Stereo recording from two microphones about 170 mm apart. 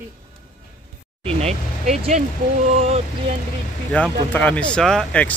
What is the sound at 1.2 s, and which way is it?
Speech, 40° right (ahead or behind).